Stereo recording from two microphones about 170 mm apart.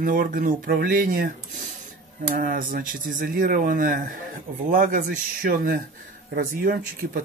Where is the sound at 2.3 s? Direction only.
55° right (ahead or behind).